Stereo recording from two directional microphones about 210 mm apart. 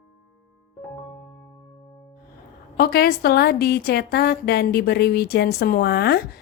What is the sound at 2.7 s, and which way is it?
A woman's voice, 45° left (ahead or behind).